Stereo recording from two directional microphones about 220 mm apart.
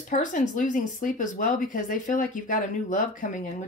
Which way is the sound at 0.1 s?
35° left (ahead or behind).